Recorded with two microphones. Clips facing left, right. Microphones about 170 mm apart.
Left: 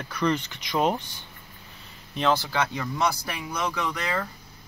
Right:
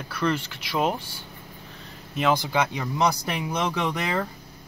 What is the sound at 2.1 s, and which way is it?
Speech, 10° right (ahead or behind).